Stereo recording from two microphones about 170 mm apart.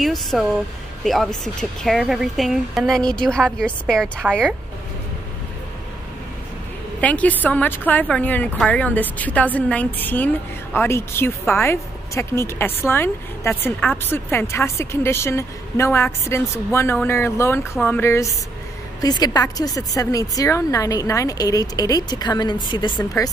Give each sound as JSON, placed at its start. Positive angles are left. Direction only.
{"t": 0.0, "sound": "a woman's voice", "side_deg": 0}
{"t": 7.0, "sound": "speech", "side_deg": 10}